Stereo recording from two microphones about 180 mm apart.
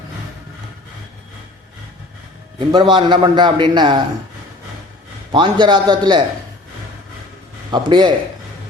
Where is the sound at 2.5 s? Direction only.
25° right (ahead or behind).